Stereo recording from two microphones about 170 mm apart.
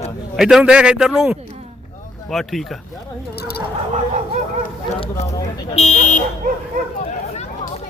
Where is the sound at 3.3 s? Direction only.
70° left (ahead or behind).